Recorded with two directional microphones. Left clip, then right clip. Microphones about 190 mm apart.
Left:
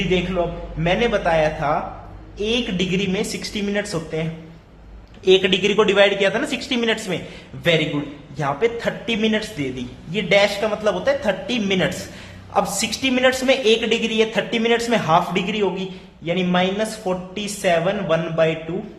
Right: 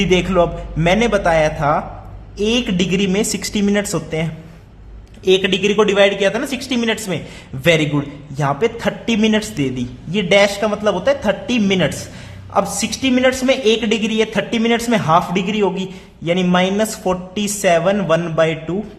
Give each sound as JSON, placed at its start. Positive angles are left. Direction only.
{"t": 0.1, "sound": "a woman's voice", "side_deg": -30}